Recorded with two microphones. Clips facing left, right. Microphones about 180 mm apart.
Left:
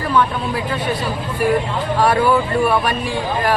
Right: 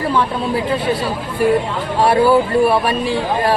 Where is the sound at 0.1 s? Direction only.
30° right (ahead or behind).